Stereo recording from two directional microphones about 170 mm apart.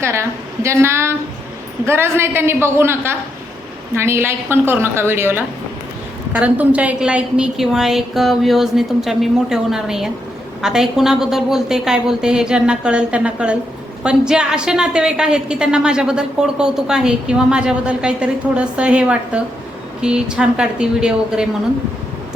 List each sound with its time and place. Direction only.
0.0 s a woman's voice: 15° right (ahead or behind)